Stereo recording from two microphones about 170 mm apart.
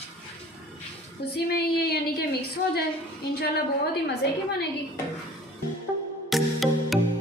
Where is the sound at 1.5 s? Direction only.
70° left (ahead or behind).